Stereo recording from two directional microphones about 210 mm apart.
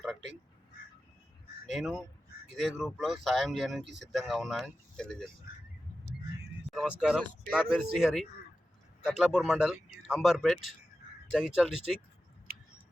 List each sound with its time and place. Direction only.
1.6 s speech: centre (ahead or behind)
6.7 s speech: 5° right (ahead or behind)